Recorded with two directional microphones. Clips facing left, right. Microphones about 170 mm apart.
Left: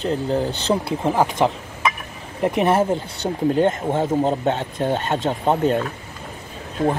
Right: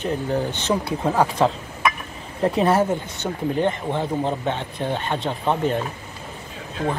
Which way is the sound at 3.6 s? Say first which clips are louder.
Left 3 dB; 45° left (ahead or behind).